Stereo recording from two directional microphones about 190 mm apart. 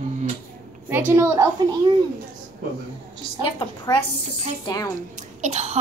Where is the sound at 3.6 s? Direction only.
25° left (ahead or behind).